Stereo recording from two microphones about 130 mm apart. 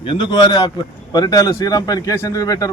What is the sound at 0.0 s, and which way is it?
A man's voice, 35° left (ahead or behind).